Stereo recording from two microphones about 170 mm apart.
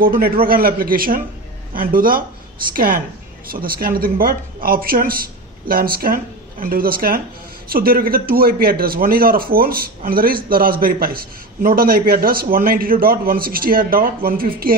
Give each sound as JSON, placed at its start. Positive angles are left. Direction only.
{"t": 0.0, "sound": "a man's voice", "side_deg": -60}